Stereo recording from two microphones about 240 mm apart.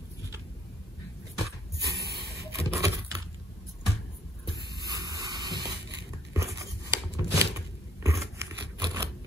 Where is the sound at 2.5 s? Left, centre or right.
Centre.